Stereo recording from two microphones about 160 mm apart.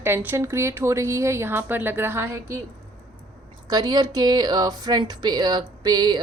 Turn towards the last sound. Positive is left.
turn(degrees=-25)  # may be behind; listen again after turning